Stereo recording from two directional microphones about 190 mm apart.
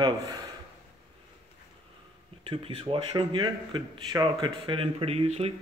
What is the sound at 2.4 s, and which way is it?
Speech, 30° right (ahead or behind).